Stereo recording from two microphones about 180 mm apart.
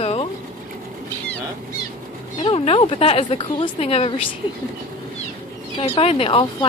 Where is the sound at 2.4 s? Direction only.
30° left (ahead or behind).